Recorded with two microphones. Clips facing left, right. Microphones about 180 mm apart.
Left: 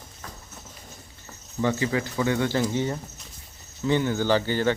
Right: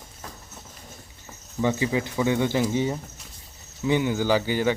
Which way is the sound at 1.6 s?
15° right (ahead or behind).